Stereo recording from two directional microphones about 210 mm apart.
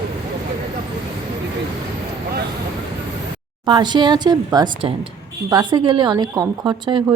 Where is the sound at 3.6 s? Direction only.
20° right (ahead or behind).